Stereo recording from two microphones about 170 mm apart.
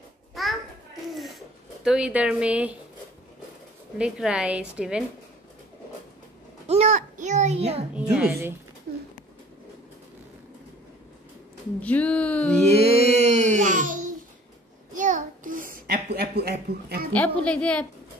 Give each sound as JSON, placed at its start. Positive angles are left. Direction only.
{"t": 0.3, "sound": "a sound", "side_deg": 0}
{"t": 1.9, "sound": "a woman's voice", "side_deg": -5}
{"t": 4.0, "sound": "a woman's voice", "side_deg": -5}
{"t": 6.7, "sound": "a sound", "side_deg": -40}
{"t": 7.9, "sound": "a woman's voice", "side_deg": -5}
{"t": 11.8, "sound": "speech", "side_deg": 10}
{"t": 12.7, "sound": "music", "side_deg": 60}
{"t": 13.1, "sound": "music", "side_deg": -40}
{"t": 15.0, "sound": "a sound", "side_deg": -50}
{"t": 17.1, "sound": "speech", "side_deg": 10}